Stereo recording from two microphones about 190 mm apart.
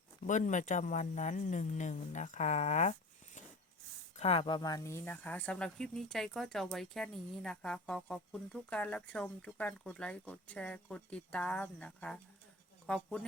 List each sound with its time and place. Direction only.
0.3 s speech: 40° left (ahead or behind)
4.2 s speech: 30° left (ahead or behind); by 13.2 s 5° left (ahead or behind)